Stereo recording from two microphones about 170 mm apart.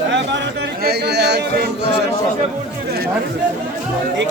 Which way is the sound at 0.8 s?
70° right (ahead or behind).